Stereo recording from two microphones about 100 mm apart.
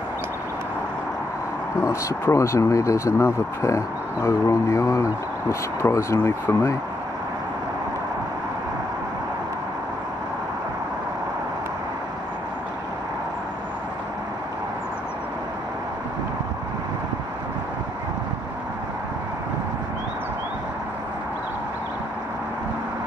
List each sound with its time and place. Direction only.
1.8 s speech: 25° left (ahead or behind)